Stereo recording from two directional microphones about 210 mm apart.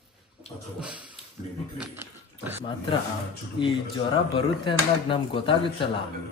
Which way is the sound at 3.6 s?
25° left (ahead or behind).